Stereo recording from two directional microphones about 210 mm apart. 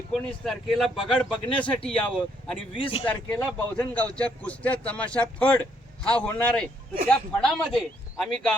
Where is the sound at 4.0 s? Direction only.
5° left (ahead or behind).